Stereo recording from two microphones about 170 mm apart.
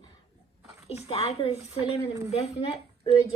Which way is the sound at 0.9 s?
35° left (ahead or behind).